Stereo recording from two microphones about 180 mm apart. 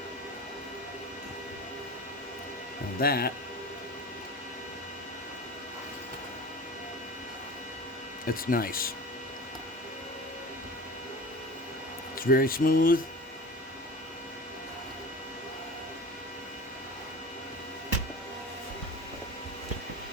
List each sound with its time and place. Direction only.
3.0 s speech: 60° left (ahead or behind)
8.3 s speech: 55° left (ahead or behind)
12.2 s speech: 55° left (ahead or behind)